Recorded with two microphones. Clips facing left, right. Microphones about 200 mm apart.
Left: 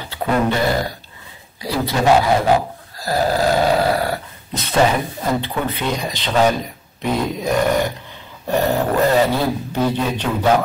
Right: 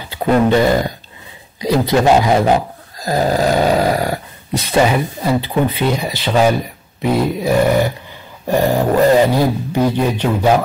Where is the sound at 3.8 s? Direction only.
15° right (ahead or behind).